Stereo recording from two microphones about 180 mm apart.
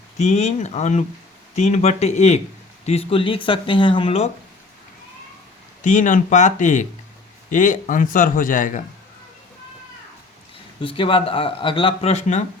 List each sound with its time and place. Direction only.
0.2 s speech: 40° left (ahead or behind)
5.8 s speech: 45° left (ahead or behind)
10.8 s speech: 30° left (ahead or behind)